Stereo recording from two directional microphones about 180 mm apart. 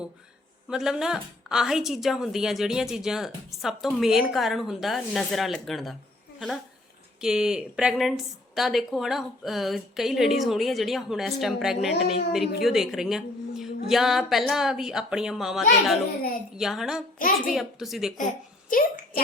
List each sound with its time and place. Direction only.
0.7 s a woman's voice: 5° right (ahead or behind)
7.2 s a woman's voice: 5° right (ahead or behind)
17.2 s a child's voice: 50° left (ahead or behind)
17.5 s a woman's voice: centre (ahead or behind)
18.7 s a child's voice: 50° left (ahead or behind)